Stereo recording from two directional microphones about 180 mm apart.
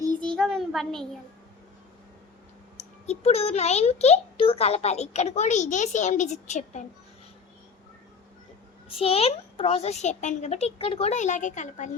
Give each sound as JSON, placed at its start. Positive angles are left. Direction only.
{"t": 0.3, "sound": "a sound", "side_deg": 0}
{"t": 2.7, "sound": "a child's voice", "side_deg": 35}
{"t": 8.9, "sound": "a child's voice", "side_deg": 30}